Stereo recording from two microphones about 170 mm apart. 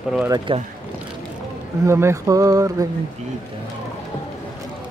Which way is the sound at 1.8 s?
15° right (ahead or behind).